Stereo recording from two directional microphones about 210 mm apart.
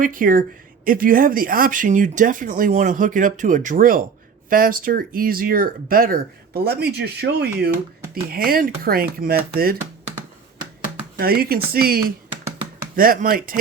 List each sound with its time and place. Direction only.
0.0 s speech: 40° right (ahead or behind)
11.2 s speech: 45° right (ahead or behind)